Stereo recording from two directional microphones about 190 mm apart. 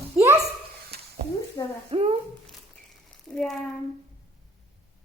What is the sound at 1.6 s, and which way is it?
Speech, 20° left (ahead or behind).